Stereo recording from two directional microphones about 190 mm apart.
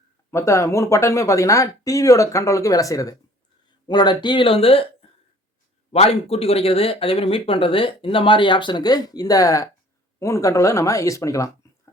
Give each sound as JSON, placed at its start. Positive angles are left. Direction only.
{"t": 0.3, "sound": "speech", "side_deg": 15}
{"t": 5.9, "sound": "speech", "side_deg": 30}